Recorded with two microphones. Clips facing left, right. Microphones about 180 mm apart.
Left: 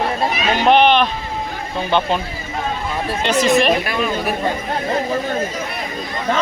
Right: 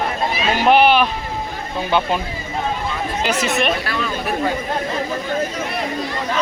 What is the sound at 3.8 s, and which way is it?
Speech, 15° left (ahead or behind).